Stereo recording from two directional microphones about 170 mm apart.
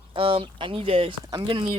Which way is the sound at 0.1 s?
30° right (ahead or behind).